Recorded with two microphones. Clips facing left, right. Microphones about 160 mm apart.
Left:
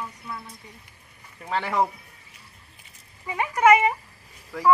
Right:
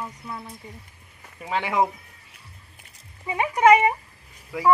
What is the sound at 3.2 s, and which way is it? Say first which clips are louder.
Speech: right 1 dB; 15° right (ahead or behind).